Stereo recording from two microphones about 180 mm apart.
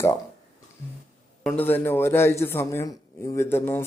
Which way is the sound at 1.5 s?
10° left (ahead or behind).